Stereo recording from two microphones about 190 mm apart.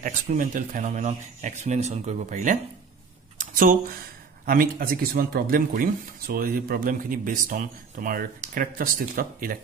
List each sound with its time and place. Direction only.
0.0 s speech: 45° right (ahead or behind)
3.3 s a sound: 45° right (ahead or behind)
4.5 s speech: 50° right (ahead or behind)